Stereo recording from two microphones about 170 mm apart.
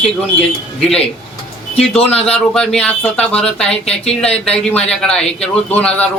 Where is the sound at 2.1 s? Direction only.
35° left (ahead or behind).